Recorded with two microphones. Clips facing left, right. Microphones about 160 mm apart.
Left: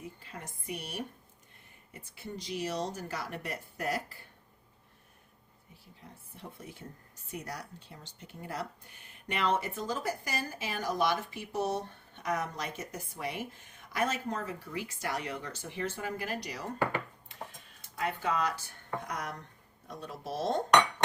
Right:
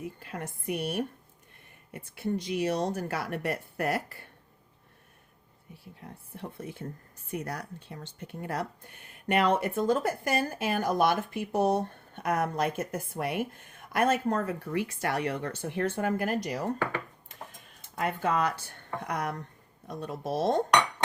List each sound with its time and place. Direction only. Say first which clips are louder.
0.2 s speech: right 8 dB; 60° right (ahead or behind)
6.0 s speech: right 7 dB; 60° right (ahead or behind)
17.9 s speech: right 4 dB; 55° right (ahead or behind)